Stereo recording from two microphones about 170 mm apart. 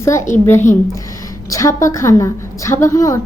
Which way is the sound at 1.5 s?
20° left (ahead or behind).